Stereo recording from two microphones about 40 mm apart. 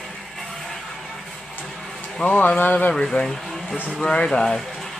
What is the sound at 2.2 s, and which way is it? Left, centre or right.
Speech, left.